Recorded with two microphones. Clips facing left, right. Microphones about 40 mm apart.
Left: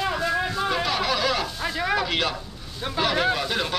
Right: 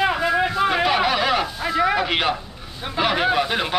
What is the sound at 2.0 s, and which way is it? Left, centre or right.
Speech, right.